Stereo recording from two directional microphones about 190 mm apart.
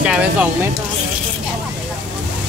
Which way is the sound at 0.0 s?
5° right (ahead or behind).